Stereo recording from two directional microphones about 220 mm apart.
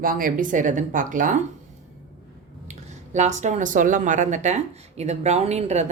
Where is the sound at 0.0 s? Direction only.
40° right (ahead or behind).